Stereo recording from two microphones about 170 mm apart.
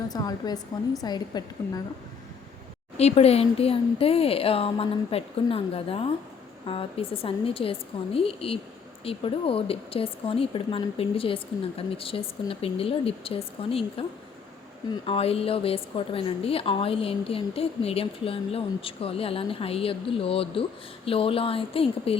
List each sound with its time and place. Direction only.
0.1 s a woman's voice: 25° left (ahead or behind)
3.0 s a woman's voice: 35° left (ahead or behind)
15.0 s a woman's voice: 35° left (ahead or behind)